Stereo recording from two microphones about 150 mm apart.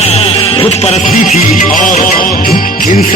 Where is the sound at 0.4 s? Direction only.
40° left (ahead or behind).